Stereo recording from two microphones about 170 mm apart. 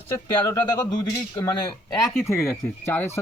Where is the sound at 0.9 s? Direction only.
25° left (ahead or behind).